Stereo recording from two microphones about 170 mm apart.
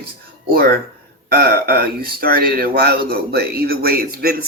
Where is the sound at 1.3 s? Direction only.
65° right (ahead or behind).